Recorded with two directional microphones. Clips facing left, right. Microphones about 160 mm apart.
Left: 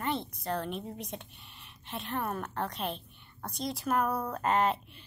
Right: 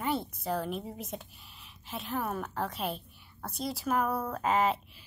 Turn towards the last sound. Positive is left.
turn(degrees=0)  # may be behind; listen again after turning